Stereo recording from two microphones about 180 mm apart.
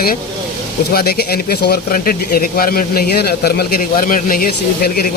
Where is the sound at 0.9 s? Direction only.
60° left (ahead or behind).